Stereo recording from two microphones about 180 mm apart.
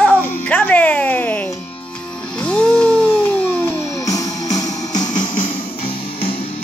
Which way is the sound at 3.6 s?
20° left (ahead or behind).